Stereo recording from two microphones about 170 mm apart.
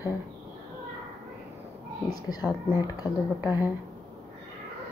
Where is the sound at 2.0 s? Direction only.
20° left (ahead or behind).